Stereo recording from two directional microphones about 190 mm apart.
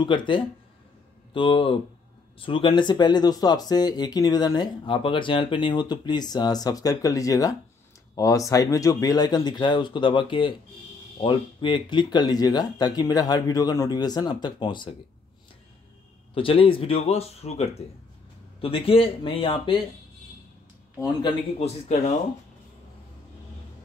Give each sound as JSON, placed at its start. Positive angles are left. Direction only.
{"t": 0.0, "sound": "speech", "side_deg": 25}
{"t": 16.3, "sound": "speech", "side_deg": 30}
{"t": 21.0, "sound": "speech", "side_deg": 25}